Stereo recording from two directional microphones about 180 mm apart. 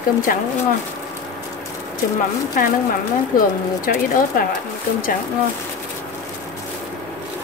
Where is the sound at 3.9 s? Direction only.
50° left (ahead or behind).